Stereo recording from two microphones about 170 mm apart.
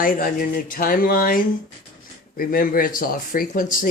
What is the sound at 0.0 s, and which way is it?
Speech, 55° left (ahead or behind).